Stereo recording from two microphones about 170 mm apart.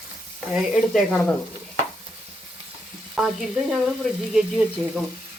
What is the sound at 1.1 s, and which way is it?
Sizzle, 5° left (ahead or behind).